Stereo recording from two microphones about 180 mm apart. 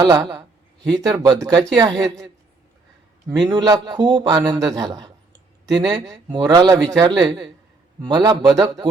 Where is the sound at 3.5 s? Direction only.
20° right (ahead or behind).